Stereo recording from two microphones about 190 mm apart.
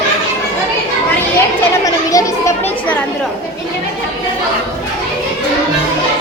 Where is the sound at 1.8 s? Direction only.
15° left (ahead or behind).